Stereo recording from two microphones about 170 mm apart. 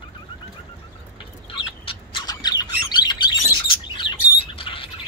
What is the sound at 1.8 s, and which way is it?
Bird, 30° left (ahead or behind).